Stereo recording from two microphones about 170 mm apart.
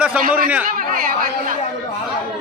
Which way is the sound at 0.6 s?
55° right (ahead or behind).